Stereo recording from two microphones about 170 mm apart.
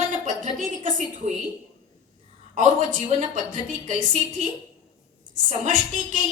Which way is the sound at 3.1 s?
45° right (ahead or behind).